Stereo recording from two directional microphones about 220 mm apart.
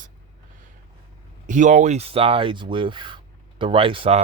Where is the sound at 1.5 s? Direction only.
35° right (ahead or behind).